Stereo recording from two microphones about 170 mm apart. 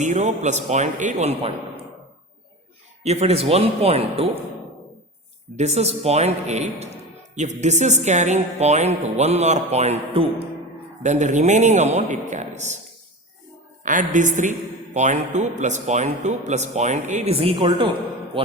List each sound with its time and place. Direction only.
0.0 s a man's voice: 45° right (ahead or behind)
3.0 s speech: 40° right (ahead or behind)
5.5 s a man's voice: 40° right (ahead or behind)
13.8 s a man's voice: 50° right (ahead or behind)
17.3 s speech: 30° right (ahead or behind)